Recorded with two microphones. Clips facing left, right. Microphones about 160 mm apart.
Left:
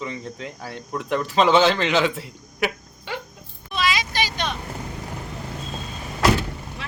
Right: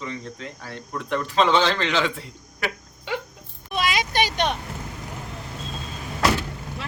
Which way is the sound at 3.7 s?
55° right (ahead or behind).